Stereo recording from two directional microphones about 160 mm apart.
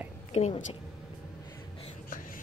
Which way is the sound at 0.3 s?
40° left (ahead or behind).